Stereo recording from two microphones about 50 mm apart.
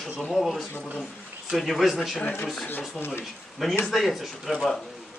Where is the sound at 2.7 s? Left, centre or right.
Left.